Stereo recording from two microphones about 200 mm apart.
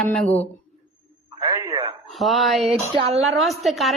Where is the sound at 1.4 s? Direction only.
20° right (ahead or behind).